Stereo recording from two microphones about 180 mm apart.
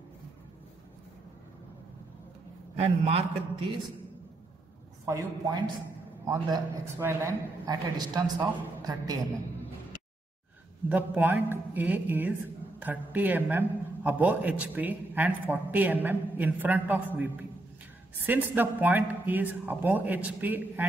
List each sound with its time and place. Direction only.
2.7 s a man's voice: 35° right (ahead or behind)
5.0 s a woman's voice: 15° right (ahead or behind)
10.9 s a woman's voice: 10° right (ahead or behind)